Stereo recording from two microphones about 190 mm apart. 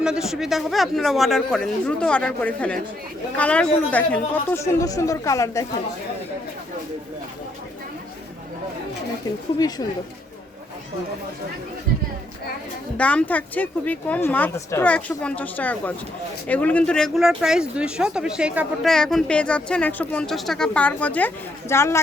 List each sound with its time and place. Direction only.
0.0 s speech: 5° right (ahead or behind); by 5.6 s 15° left (ahead or behind)
9.6 s speech: 20° left (ahead or behind)
13.0 s speech: 5° left (ahead or behind)